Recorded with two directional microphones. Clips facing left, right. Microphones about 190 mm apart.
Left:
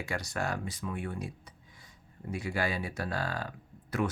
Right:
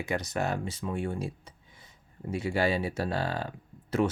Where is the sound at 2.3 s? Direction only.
25° right (ahead or behind).